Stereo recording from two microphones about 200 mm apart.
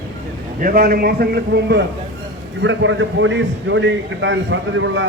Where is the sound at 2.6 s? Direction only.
70° right (ahead or behind).